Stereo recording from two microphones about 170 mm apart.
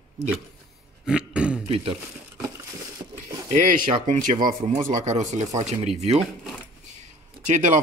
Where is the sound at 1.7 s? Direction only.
35° right (ahead or behind).